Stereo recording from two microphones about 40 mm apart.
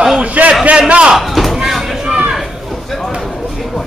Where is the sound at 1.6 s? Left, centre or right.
Centre.